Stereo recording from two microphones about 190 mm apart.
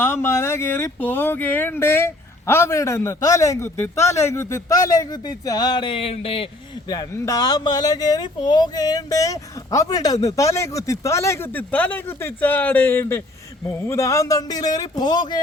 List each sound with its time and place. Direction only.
0.0 s speech: 15° left (ahead or behind)